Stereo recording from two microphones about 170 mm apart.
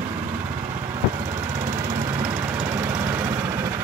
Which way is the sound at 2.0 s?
20° right (ahead or behind).